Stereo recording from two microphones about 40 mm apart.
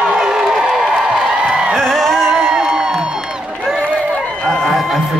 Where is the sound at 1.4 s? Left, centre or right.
Right.